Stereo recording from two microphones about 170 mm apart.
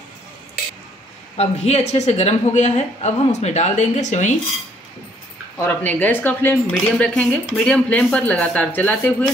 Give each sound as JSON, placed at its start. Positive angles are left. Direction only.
{"t": 1.3, "sound": "speech", "side_deg": 40}
{"t": 5.6, "sound": "speech", "side_deg": 10}